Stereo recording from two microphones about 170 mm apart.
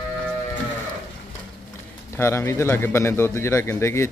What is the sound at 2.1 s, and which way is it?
A man's voice, 15° left (ahead or behind).